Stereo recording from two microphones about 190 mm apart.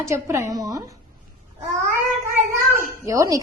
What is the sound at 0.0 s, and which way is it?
Speech, 15° right (ahead or behind).